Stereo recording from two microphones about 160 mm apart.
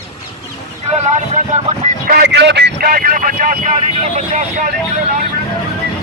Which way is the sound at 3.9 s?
45° right (ahead or behind).